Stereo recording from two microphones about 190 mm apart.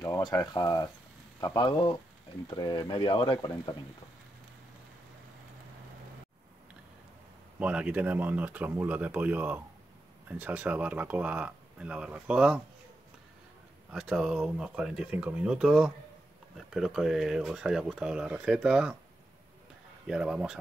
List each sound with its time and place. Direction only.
0.0 s speech: 20° left (ahead or behind)
7.5 s speech: 5° right (ahead or behind)
13.9 s speech: centre (ahead or behind)
20.1 s speech: 5° right (ahead or behind)